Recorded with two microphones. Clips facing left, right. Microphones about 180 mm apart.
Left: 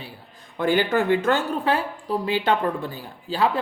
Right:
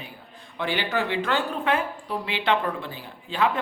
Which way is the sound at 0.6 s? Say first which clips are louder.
Left 6 dB; 45° left (ahead or behind).